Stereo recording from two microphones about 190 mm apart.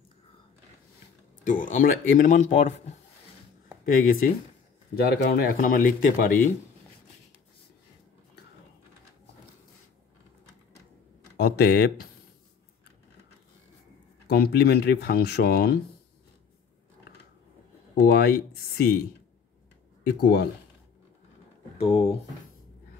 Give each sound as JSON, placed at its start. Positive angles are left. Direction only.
{"t": 1.4, "sound": "speech", "side_deg": 40}
{"t": 3.8, "sound": "speech", "side_deg": 45}
{"t": 11.3, "sound": "speech", "side_deg": 55}
{"t": 14.2, "sound": "speech", "side_deg": 55}
{"t": 18.0, "sound": "speech", "side_deg": 55}
{"t": 20.0, "sound": "speech", "side_deg": 55}
{"t": 21.7, "sound": "speech", "side_deg": 30}